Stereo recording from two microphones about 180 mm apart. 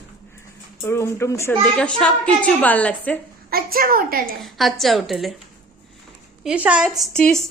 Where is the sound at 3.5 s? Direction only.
55° right (ahead or behind).